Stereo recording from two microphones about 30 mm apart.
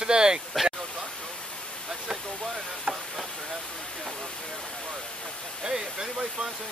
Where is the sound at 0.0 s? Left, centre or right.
Right.